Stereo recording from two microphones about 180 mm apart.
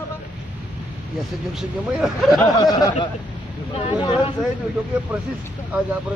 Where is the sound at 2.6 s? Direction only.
20° left (ahead or behind).